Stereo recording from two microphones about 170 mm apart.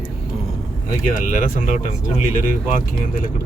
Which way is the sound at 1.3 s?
55° left (ahead or behind).